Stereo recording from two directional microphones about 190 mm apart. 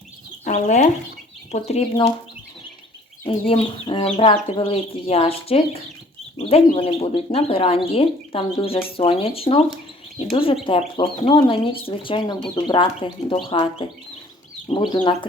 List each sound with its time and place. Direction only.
0.4 s speech: 40° left (ahead or behind)
3.2 s speech: 30° left (ahead or behind)